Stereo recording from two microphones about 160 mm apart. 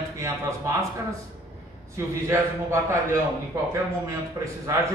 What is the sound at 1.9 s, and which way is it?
A man's voice, 15° right (ahead or behind).